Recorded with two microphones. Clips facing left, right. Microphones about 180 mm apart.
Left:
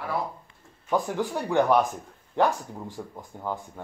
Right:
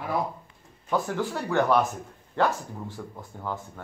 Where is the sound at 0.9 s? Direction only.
15° left (ahead or behind).